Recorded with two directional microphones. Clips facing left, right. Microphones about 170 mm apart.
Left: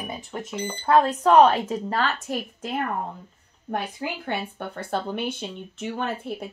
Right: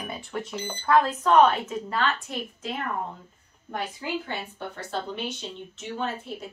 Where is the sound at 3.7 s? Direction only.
60° left (ahead or behind).